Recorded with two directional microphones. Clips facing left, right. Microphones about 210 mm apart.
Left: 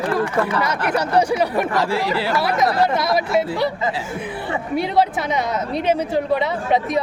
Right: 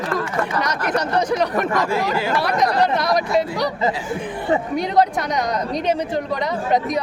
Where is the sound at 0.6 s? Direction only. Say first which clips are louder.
Left 1 dB; 5° left (ahead or behind).